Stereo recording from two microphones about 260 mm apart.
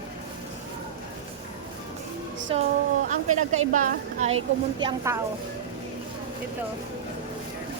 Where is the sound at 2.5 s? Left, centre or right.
Right.